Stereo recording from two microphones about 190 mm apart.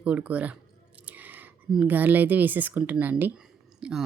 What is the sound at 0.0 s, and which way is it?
Speech, 5° right (ahead or behind).